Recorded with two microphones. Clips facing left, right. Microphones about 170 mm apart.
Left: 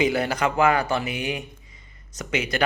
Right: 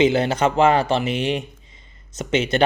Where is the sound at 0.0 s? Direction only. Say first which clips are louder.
Right 5 dB; 25° right (ahead or behind).